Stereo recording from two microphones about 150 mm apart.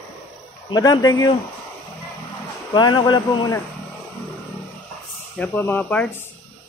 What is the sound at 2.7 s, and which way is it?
Speech, 30° left (ahead or behind).